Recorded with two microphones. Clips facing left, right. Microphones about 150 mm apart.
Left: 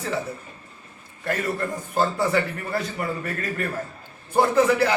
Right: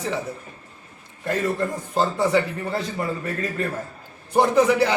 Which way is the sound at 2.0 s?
20° right (ahead or behind).